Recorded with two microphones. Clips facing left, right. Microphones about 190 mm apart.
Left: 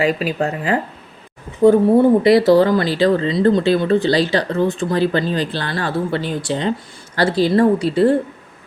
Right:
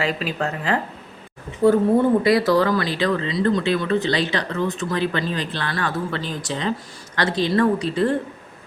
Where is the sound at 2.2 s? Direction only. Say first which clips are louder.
Left 6 dB; 25° left (ahead or behind).